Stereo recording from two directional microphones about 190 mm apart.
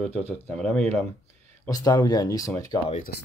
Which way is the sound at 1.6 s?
20° left (ahead or behind).